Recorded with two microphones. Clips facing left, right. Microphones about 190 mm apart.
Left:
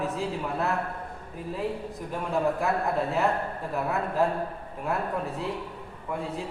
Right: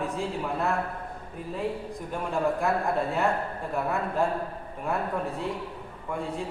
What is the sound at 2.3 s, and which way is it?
A man's voice, centre (ahead or behind).